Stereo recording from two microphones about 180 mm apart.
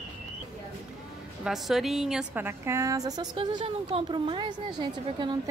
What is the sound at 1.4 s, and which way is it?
A woman's voice, centre (ahead or behind).